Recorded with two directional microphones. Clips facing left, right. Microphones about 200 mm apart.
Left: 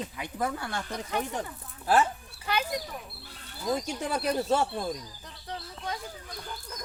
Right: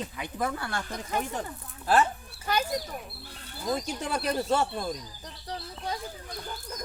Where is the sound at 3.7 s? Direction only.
15° left (ahead or behind).